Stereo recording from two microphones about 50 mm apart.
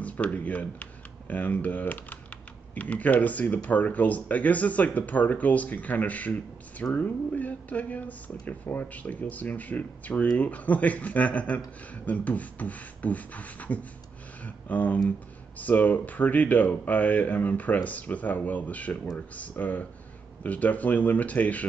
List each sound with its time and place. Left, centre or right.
0.0 s speech: left
14.4 s a sound: left
15.6 s speech: left